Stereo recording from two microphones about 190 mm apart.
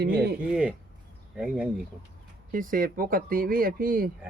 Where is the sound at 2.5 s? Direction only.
45° right (ahead or behind).